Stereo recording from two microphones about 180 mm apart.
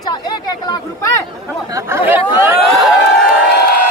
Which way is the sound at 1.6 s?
15° right (ahead or behind).